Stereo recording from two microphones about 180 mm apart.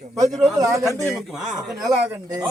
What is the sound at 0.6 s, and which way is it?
Speech, 20° right (ahead or behind).